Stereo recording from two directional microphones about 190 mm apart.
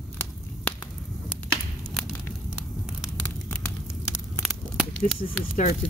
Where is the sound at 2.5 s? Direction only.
5° right (ahead or behind).